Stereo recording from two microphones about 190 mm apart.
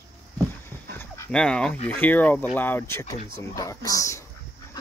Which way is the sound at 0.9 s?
15° left (ahead or behind).